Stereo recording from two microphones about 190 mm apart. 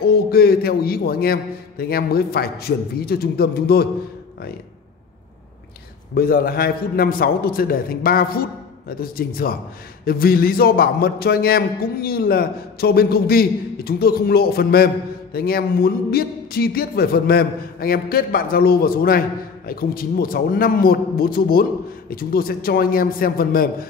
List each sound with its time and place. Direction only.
0.0 s a man's voice: 55° left (ahead or behind)
6.1 s a man's voice: 50° left (ahead or behind)